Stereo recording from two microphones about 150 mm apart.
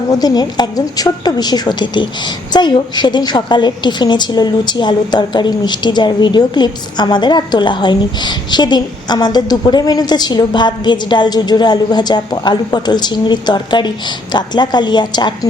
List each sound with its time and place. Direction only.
0.1 s a woman's voice: 25° left (ahead or behind)